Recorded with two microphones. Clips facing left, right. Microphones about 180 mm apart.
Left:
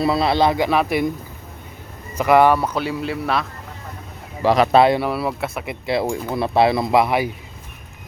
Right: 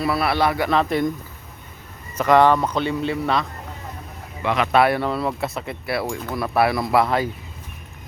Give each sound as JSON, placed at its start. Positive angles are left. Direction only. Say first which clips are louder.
{"t": 0.0, "sound": "speech", "louder": "left 3 dB", "side_deg": 25}
{"t": 2.1, "sound": "speech", "louder": "left 1 dB", "side_deg": 10}
{"t": 4.4, "sound": "speech", "louder": "left 4 dB", "side_deg": 35}
{"t": 4.9, "sound": "speech", "louder": "left 2 dB", "side_deg": 10}
{"t": 5.8, "sound": "speech", "louder": "left 5 dB", "side_deg": 20}
{"t": 7.0, "sound": "speech", "louder": "left 1 dB", "side_deg": 10}